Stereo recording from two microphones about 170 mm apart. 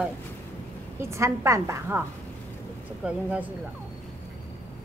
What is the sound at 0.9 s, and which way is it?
Speech, 15° right (ahead or behind).